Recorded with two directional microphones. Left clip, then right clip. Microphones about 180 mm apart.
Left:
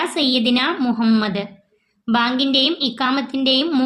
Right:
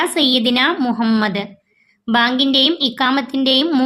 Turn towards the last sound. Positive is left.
turn(degrees=-30)  # may be behind; listen again after turning